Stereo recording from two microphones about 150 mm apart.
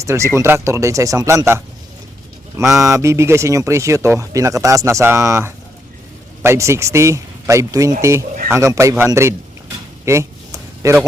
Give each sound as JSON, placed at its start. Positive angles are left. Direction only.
{"t": 0.0, "sound": "speech", "side_deg": -20}
{"t": 2.8, "sound": "speech", "side_deg": -20}